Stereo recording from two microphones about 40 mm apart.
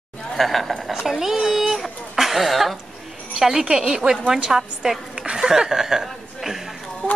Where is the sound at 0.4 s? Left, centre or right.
Centre.